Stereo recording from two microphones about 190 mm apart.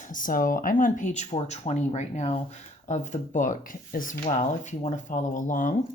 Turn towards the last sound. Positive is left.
turn(degrees=45)  # may be behind; listen again after turning